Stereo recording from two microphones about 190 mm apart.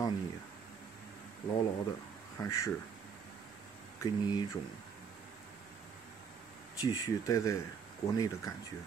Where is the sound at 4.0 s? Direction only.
20° left (ahead or behind).